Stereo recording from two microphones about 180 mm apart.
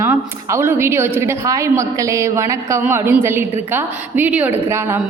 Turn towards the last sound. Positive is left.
turn(degrees=-15)  # may be behind; listen again after turning